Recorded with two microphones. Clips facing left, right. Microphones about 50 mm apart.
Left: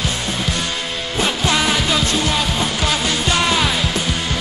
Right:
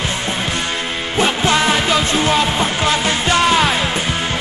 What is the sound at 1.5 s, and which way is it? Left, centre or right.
Music, right.